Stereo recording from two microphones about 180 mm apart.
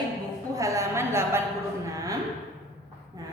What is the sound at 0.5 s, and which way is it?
Speech, 20° right (ahead or behind).